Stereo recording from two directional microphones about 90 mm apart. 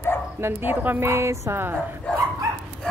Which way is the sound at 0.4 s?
25° right (ahead or behind).